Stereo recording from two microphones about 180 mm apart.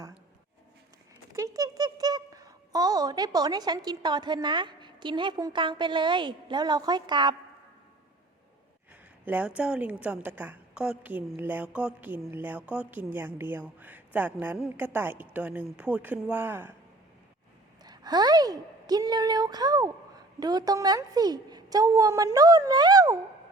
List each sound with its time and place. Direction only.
1.3 s a child's voice: 15° right (ahead or behind)
9.2 s a woman's voice: 10° right (ahead or behind)
17.8 s a woman's voice: 25° right (ahead or behind)